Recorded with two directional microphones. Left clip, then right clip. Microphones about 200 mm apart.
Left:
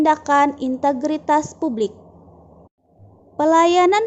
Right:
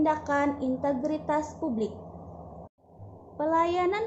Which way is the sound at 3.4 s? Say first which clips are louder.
Left 11 dB; 50° left (ahead or behind).